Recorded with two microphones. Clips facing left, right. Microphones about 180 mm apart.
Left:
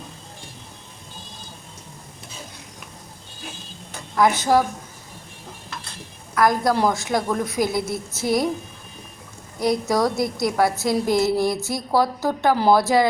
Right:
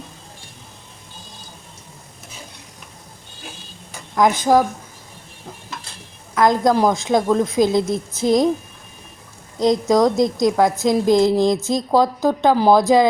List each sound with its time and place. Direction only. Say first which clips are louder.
4.1 s a woman's voice: right 3 dB; 15° right (ahead or behind)
6.3 s a woman's voice: right 3 dB; 20° right (ahead or behind)
9.6 s a woman's voice: right 5 dB; 20° right (ahead or behind)